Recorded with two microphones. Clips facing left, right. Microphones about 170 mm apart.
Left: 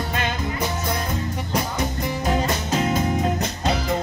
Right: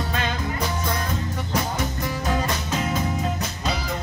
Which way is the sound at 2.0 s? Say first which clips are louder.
Left 3 dB; 20° left (ahead or behind).